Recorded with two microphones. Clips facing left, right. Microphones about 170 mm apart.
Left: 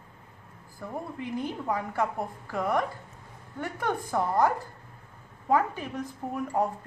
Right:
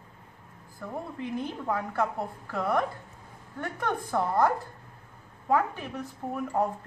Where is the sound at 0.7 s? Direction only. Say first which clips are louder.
Even; 10° left (ahead or behind).